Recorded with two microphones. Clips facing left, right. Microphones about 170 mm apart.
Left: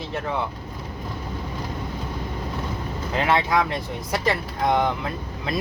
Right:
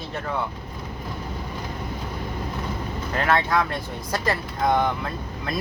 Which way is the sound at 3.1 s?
15° left (ahead or behind).